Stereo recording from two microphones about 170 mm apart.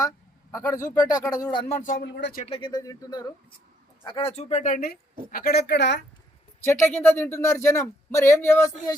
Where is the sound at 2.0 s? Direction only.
85° left.